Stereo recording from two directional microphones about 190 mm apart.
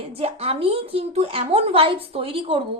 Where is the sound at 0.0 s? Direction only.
30° right (ahead or behind).